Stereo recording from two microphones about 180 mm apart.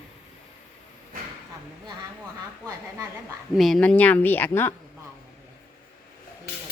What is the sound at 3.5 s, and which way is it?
Speech, centre (ahead or behind).